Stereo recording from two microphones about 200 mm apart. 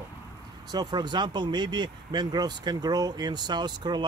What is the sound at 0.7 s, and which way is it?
Speech, 20° right (ahead or behind).